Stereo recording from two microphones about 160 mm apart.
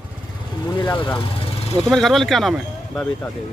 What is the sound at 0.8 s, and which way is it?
Speech, 30° left (ahead or behind).